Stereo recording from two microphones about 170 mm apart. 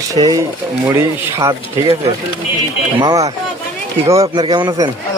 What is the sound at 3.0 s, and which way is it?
Speech, 20° right (ahead or behind).